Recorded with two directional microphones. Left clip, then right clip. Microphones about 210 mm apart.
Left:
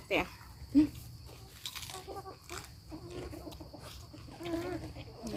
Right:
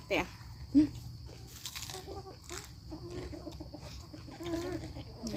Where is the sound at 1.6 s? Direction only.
15° right (ahead or behind).